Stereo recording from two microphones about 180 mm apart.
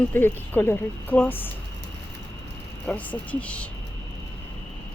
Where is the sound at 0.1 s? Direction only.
10° left (ahead or behind).